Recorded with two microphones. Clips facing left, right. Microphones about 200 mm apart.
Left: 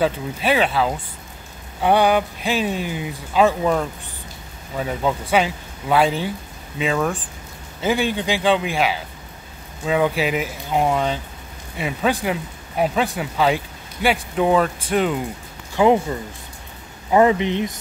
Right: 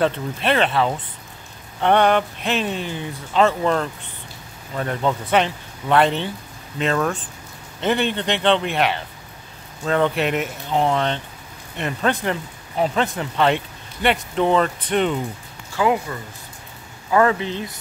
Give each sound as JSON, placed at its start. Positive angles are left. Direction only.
{"t": 0.0, "sound": "speech", "side_deg": 5}
{"t": 15.7, "sound": "speech", "side_deg": 25}